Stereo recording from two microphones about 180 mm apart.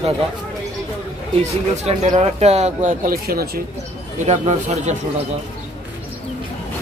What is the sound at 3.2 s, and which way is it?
Speech, 60° right (ahead or behind).